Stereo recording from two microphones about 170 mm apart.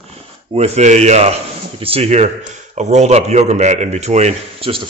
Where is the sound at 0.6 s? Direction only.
40° right (ahead or behind).